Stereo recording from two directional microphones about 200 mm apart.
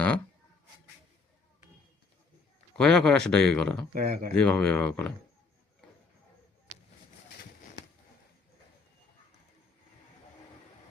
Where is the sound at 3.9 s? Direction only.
45° right (ahead or behind).